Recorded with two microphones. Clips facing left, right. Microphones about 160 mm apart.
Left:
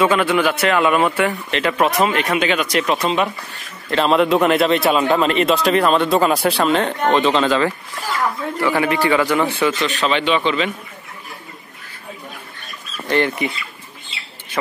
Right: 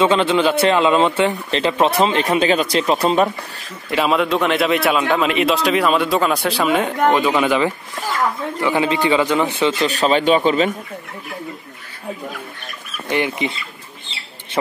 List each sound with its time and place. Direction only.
0.0 s speech: 25° right (ahead or behind)
3.9 s a man's voice: 5° right (ahead or behind)
9.8 s a man's voice: 40° right (ahead or behind)
13.1 s speech: 15° right (ahead or behind)